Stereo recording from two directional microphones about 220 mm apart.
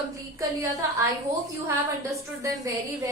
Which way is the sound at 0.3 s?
15° right (ahead or behind).